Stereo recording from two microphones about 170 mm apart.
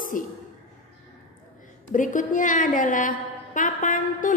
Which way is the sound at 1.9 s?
50° left (ahead or behind).